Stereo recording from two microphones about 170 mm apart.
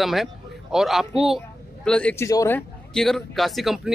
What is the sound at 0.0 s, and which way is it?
Speech, centre (ahead or behind).